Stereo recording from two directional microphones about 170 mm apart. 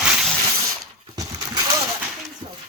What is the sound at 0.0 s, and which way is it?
Ratchet, 5° right (ahead or behind).